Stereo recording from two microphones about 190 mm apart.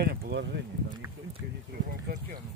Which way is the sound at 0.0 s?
60° right (ahead or behind).